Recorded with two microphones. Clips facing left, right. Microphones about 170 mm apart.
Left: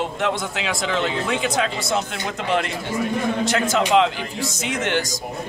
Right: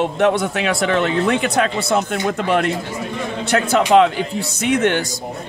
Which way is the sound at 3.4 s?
60° right (ahead or behind).